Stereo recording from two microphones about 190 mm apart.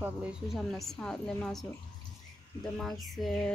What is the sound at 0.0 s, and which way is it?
A woman's voice, 5° right (ahead or behind).